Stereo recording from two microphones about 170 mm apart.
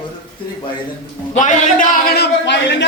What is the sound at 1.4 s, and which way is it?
A man's voice, 50° left (ahead or behind).